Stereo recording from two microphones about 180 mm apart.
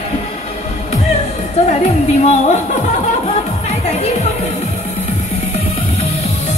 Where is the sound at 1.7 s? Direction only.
40° left (ahead or behind).